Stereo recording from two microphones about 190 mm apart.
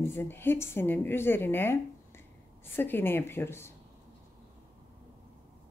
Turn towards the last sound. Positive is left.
turn(degrees=10)  # may be behind; listen again after turning